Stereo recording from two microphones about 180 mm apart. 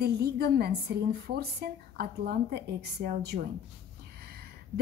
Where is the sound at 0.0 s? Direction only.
60° right (ahead or behind).